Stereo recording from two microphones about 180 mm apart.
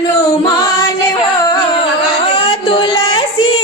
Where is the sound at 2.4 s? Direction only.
30° left (ahead or behind).